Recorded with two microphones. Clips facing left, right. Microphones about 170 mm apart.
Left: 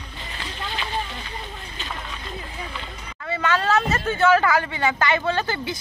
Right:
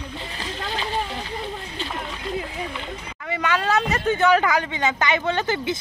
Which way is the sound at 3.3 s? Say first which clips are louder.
Left 1 dB; 15° right (ahead or behind).